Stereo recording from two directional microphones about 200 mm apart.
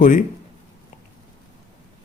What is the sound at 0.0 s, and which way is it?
Speech, 40° left (ahead or behind).